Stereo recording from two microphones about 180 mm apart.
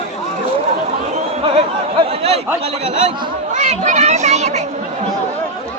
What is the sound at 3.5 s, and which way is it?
A child's voice, 40° right (ahead or behind).